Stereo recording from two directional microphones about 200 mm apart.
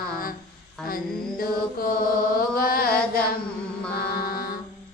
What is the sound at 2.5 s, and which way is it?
Chant, 45° left (ahead or behind).